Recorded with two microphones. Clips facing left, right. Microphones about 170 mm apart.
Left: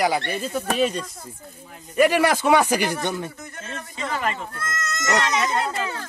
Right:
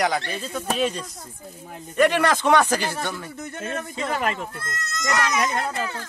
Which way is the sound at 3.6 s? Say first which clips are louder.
Right 4 dB; 55° right (ahead or behind).